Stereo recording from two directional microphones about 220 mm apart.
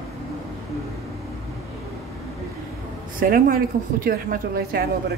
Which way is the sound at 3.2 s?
40° right (ahead or behind).